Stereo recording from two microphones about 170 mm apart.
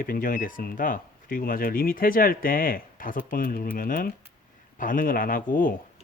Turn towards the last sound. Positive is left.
turn(degrees=55)  # may be behind; listen again after turning